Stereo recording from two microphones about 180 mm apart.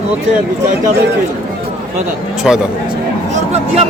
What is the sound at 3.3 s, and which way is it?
Speech, 35° right (ahead or behind).